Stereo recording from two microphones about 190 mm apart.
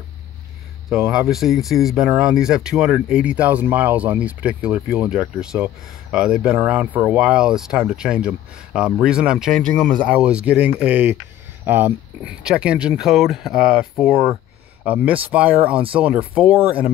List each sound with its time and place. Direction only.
0.8 s speech: 5° right (ahead or behind)
15.2 s speech: 5° right (ahead or behind)